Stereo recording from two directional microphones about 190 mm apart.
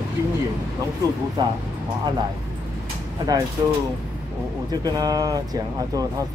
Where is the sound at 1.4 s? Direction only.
20° right (ahead or behind).